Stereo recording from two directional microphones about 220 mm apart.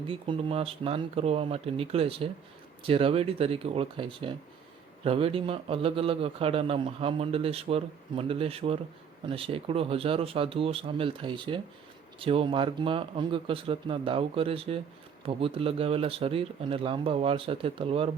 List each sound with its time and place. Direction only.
0.1 s a man's voice: 25° right (ahead or behind)